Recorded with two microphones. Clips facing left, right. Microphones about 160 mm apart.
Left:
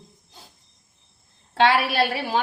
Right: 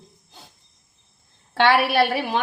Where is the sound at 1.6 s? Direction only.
65° right (ahead or behind).